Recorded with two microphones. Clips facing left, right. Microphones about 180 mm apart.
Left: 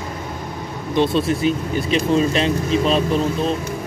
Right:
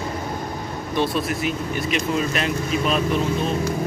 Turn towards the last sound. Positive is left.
turn(degrees=30)  # may be behind; listen again after turning